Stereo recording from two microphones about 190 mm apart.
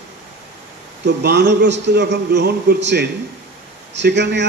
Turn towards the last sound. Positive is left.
turn(degrees=-65)  # may be behind; listen again after turning